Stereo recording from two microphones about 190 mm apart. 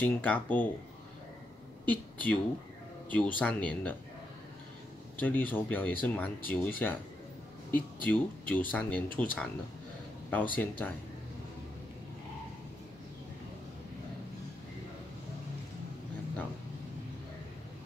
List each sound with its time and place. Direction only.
0.0 s speech: 10° left (ahead or behind)
1.9 s speech: 10° left (ahead or behind)
5.2 s speech: 10° left (ahead or behind)
8.0 s speech: 10° left (ahead or behind)